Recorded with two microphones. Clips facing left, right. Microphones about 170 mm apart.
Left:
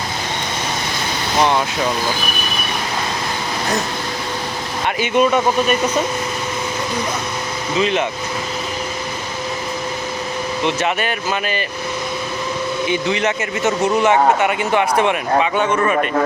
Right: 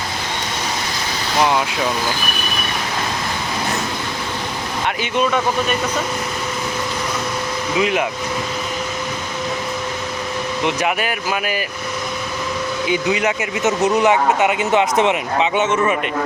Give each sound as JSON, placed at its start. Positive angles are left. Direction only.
{"t": 5.1, "sound": "speech", "side_deg": 10}
{"t": 7.8, "sound": "speech", "side_deg": -15}
{"t": 10.6, "sound": "speech", "side_deg": -15}
{"t": 12.9, "sound": "speech", "side_deg": -10}